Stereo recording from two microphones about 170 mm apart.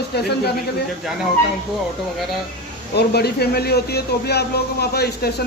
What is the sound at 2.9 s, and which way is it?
Speech, 70° left (ahead or behind).